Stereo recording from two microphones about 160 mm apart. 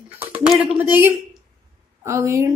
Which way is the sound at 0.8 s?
15° right (ahead or behind).